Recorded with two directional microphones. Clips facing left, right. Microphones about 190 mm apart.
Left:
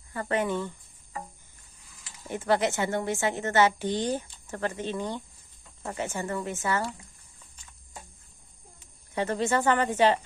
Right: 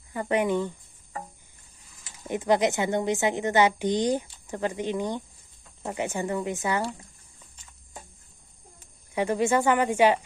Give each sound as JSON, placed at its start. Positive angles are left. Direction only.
{"t": 0.1, "sound": "speech", "side_deg": -15}
{"t": 2.0, "sound": "speech", "side_deg": -15}
{"t": 9.1, "sound": "speech", "side_deg": -10}